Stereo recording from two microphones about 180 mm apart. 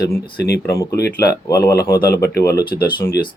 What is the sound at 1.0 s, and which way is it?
Speech, 60° left (ahead or behind).